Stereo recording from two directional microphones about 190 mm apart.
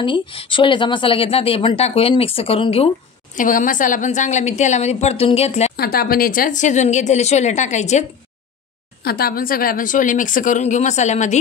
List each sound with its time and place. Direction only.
0.0 s speech: 25° left (ahead or behind)
3.3 s a woman's voice: 45° left (ahead or behind)
5.8 s a woman's voice: 50° left (ahead or behind)
9.0 s a woman's voice: 55° left (ahead or behind)